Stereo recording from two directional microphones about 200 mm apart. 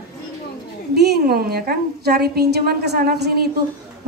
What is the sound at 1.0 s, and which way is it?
A woman's voice, 50° right (ahead or behind).